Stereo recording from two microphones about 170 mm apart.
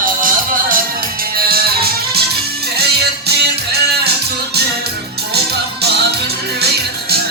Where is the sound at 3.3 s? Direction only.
70° right (ahead or behind).